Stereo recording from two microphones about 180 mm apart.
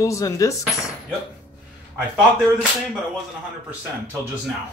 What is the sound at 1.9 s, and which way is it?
Speech, 5° right (ahead or behind).